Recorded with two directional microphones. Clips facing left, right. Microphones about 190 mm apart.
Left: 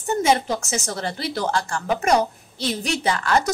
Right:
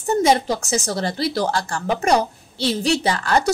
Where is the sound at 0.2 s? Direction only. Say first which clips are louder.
Right 1 dB; 35° right (ahead or behind).